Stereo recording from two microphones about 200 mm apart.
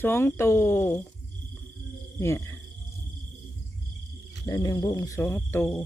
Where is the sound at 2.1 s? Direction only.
15° left (ahead or behind).